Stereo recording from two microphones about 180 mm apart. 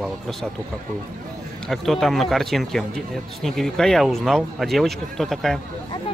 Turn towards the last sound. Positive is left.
turn(degrees=0)  # may be behind; listen again after turning